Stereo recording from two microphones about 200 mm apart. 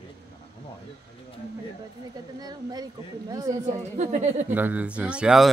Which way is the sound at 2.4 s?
20° right (ahead or behind).